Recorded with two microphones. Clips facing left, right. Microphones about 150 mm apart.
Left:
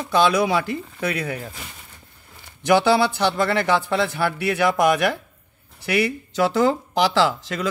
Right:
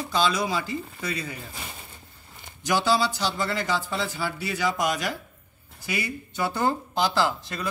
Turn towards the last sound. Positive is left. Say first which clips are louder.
# left 5 dB
turn(degrees=90)